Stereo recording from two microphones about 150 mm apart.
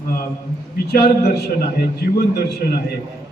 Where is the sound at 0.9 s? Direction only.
90° left.